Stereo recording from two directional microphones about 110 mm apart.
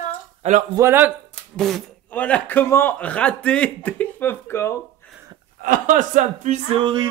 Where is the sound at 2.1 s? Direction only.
15° left (ahead or behind).